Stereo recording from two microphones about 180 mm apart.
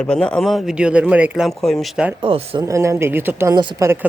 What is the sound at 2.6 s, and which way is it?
Speech, 15° right (ahead or behind).